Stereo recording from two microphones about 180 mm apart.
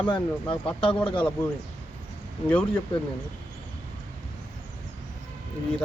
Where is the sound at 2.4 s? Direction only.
10° left (ahead or behind).